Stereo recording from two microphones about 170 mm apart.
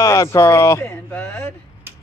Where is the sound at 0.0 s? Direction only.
20° left (ahead or behind).